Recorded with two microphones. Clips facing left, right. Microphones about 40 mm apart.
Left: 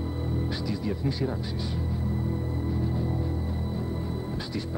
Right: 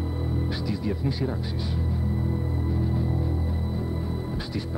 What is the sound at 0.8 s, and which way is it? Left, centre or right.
Speech, centre.